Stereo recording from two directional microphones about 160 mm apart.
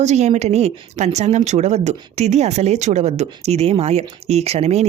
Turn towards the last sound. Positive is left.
turn(degrees=-40)  # may be behind; listen again after turning